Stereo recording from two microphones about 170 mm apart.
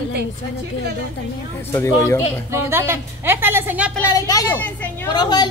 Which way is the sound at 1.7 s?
15° left (ahead or behind).